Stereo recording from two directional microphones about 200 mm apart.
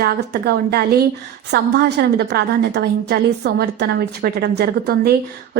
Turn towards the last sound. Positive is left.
turn(degrees=-55)  # may be behind; listen again after turning